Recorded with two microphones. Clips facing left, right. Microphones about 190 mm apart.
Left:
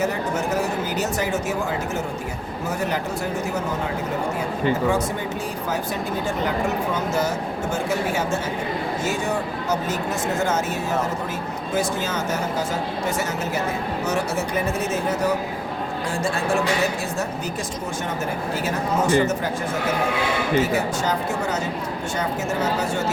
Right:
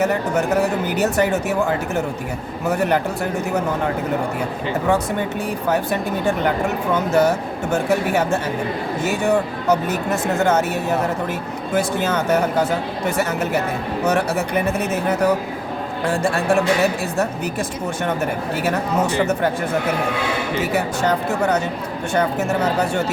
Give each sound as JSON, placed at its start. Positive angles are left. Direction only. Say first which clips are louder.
{"t": 0.0, "sound": "speech", "louder": "right 4 dB", "side_deg": -60}
{"t": 2.6, "sound": "speech", "louder": "right 7 dB", "side_deg": -60}
{"t": 5.6, "sound": "speech", "louder": "right 7 dB", "side_deg": -60}
{"t": 18.6, "sound": "speech", "louder": "right 3 dB", "side_deg": -60}
{"t": 20.7, "sound": "speech", "louder": "right 3 dB", "side_deg": -65}